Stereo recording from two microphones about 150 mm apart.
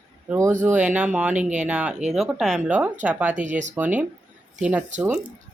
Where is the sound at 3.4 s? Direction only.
55° right (ahead or behind).